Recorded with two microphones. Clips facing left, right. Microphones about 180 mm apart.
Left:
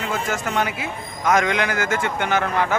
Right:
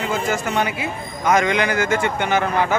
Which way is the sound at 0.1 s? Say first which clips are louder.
Right 2 dB; centre (ahead or behind).